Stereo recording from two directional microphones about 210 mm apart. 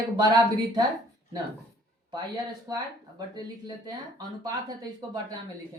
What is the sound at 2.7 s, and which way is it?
Speech, 20° right (ahead or behind).